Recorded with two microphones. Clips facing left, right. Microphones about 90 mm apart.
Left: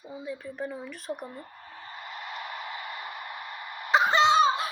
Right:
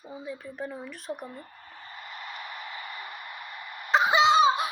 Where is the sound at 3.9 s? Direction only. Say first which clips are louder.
Even; centre (ahead or behind).